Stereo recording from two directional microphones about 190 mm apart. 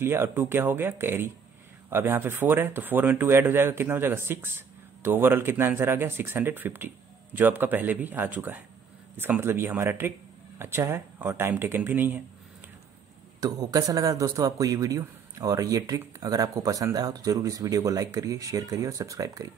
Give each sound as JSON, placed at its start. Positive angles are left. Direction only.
{"t": 0.0, "sound": "speech", "side_deg": -10}
{"t": 13.4, "sound": "speech", "side_deg": -20}